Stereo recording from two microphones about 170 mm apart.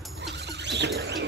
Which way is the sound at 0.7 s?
85° right.